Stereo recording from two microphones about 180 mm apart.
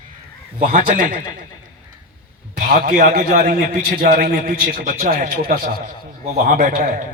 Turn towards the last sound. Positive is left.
turn(degrees=-50)  # may be behind; listen again after turning